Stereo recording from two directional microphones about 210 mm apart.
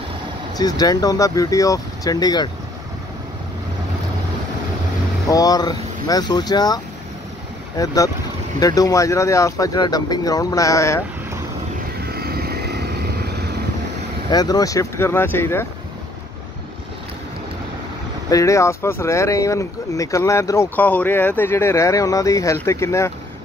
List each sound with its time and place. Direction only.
0.6 s speech: 20° left (ahead or behind)
5.3 s speech: 15° left (ahead or behind)
12.0 s vehicle: 45° right (ahead or behind)
14.3 s speech: 20° left (ahead or behind)
18.3 s speech: 15° left (ahead or behind)